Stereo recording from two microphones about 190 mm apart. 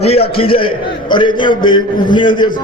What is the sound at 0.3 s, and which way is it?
A man's voice, 30° left (ahead or behind).